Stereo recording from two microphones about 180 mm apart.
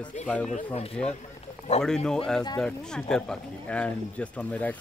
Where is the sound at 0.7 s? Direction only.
35° left (ahead or behind).